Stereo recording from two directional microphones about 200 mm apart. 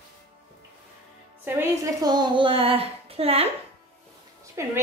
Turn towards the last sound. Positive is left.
turn(degrees=-15)  # may be behind; listen again after turning